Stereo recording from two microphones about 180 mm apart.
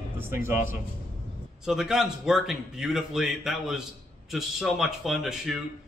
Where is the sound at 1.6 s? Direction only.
5° right (ahead or behind).